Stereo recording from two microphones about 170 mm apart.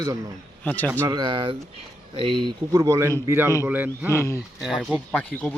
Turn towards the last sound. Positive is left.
turn(degrees=5)  # may be behind; listen again after turning